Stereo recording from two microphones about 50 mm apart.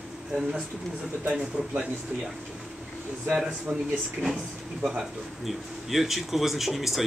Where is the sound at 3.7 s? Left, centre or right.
Right.